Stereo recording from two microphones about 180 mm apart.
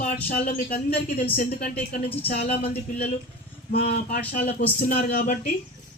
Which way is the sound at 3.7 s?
55° left (ahead or behind).